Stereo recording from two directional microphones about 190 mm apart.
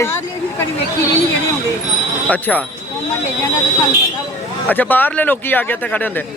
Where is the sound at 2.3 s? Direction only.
10° left (ahead or behind).